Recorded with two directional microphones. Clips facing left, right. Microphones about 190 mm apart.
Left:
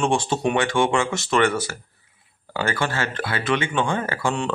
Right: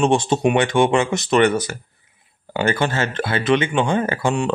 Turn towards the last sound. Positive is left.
turn(degrees=-20)  # may be behind; listen again after turning